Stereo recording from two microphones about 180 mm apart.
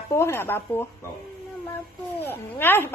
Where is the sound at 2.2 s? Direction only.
10° left (ahead or behind).